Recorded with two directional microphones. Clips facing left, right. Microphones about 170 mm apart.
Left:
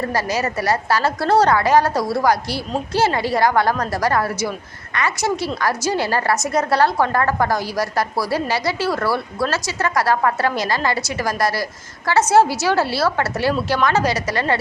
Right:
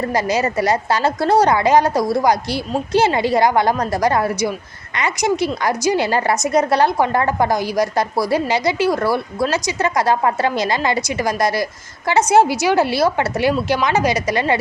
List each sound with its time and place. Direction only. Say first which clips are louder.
0.1 s a woman's voice: right 3 dB; 20° right (ahead or behind)